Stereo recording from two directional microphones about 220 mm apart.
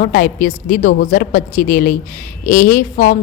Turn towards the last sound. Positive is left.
turn(degrees=40)  # may be behind; listen again after turning